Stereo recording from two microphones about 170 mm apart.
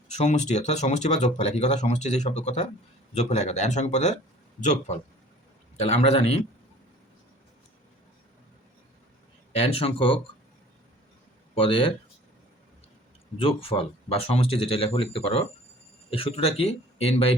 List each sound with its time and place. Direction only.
0.1 s speech: 40° left (ahead or behind)
9.8 s speech: 30° left (ahead or behind)
11.5 s speech: 30° left (ahead or behind)
13.4 s speech: 35° left (ahead or behind)